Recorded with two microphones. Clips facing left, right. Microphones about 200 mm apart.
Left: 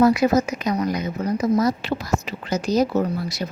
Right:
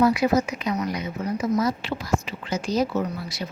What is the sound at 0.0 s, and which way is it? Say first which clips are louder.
Speech: left 3 dB; 45° left (ahead or behind).